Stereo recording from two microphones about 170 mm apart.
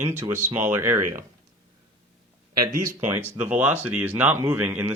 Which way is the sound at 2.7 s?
15° right (ahead or behind).